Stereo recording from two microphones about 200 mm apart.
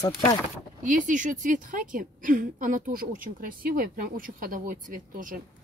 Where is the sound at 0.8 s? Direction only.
40° right (ahead or behind).